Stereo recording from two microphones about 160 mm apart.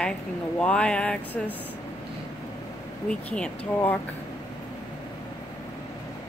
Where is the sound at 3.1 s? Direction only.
5° left (ahead or behind).